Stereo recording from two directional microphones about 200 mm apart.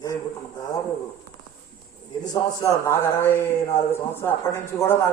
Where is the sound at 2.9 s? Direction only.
10° left (ahead or behind).